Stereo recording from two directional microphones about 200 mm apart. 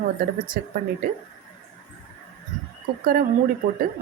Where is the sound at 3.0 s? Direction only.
45° right (ahead or behind).